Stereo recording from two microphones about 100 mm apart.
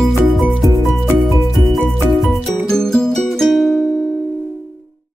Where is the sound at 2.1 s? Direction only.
Centre (ahead or behind).